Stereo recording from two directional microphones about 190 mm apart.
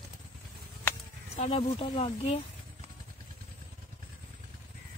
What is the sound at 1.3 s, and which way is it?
Speech, 35° left (ahead or behind).